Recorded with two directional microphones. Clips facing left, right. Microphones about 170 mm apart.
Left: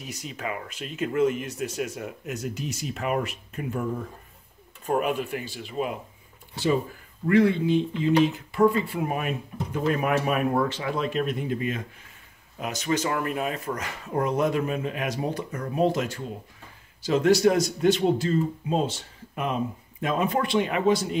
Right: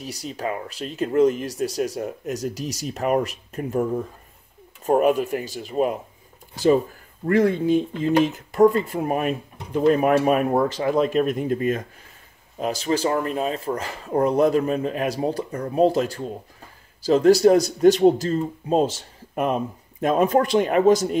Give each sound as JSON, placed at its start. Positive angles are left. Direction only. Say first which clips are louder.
{"t": 0.0, "sound": "speech", "louder": "right 5 dB", "side_deg": -35}
{"t": 4.8, "sound": "speech", "louder": "right 7 dB", "side_deg": -40}
{"t": 12.5, "sound": "speech", "louder": "right 4 dB", "side_deg": -30}